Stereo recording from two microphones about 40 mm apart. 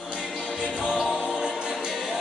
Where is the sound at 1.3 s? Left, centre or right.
Centre.